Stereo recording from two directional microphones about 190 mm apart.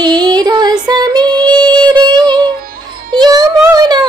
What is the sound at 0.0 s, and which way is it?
Music, 20° right (ahead or behind).